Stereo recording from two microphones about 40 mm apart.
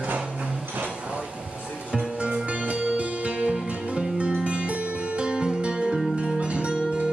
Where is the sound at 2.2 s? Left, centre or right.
Right.